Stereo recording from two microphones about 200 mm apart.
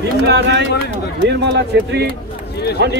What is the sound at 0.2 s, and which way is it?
Speech, 60° right (ahead or behind).